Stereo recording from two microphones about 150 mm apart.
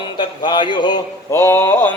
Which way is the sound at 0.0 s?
30° left (ahead or behind).